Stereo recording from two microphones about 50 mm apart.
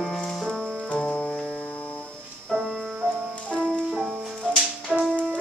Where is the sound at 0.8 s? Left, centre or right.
Left.